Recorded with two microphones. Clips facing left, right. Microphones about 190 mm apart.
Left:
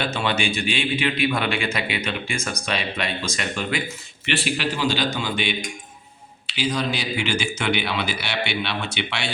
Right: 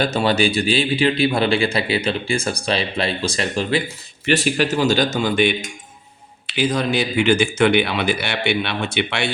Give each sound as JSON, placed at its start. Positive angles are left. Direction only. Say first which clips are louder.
{"t": 0.0, "sound": "a man's voice", "louder": "right 6 dB", "side_deg": -40}